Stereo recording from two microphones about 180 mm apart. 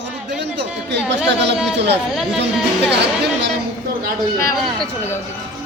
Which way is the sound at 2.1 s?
Centre (ahead or behind).